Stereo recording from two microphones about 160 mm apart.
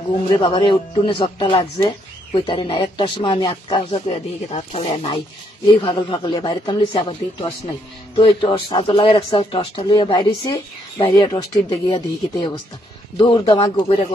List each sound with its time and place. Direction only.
0.4 s speech: 30° left (ahead or behind)